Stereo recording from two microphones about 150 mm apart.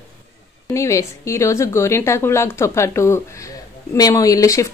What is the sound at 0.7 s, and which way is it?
A woman's voice, 20° left (ahead or behind).